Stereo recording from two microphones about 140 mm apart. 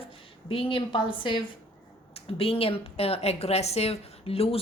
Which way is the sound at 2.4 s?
40° left (ahead or behind).